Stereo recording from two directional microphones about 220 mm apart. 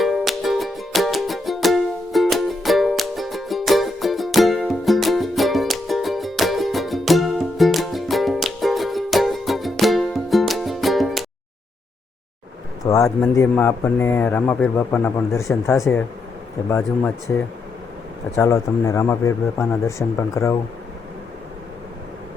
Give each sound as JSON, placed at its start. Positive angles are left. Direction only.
{"t": 0.0, "sound": "music", "side_deg": 0}
{"t": 12.8, "sound": "a sound", "side_deg": 15}
{"t": 13.3, "sound": "a man's voice", "side_deg": 10}